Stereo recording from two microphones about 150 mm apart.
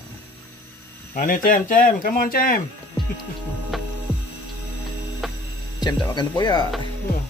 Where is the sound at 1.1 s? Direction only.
65° left (ahead or behind).